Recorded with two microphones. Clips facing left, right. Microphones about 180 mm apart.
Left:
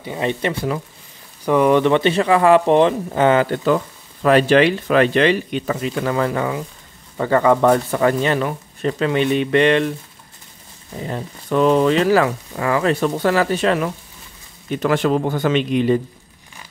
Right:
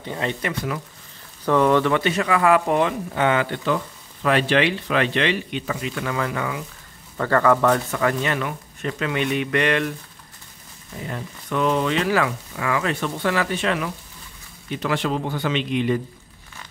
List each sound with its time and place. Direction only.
0.0 s speech: 15° left (ahead or behind)
1.4 s speech: 15° left (ahead or behind); by 6.6 s 35° left (ahead or behind)
7.2 s speech: 15° left (ahead or behind)
7.6 s speech: 30° left (ahead or behind)
11.0 s speech: 30° left (ahead or behind)